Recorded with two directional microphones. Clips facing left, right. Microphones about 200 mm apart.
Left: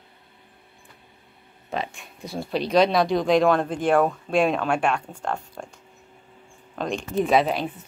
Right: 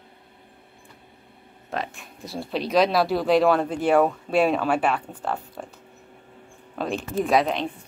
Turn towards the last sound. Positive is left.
turn(degrees=5)  # may be behind; listen again after turning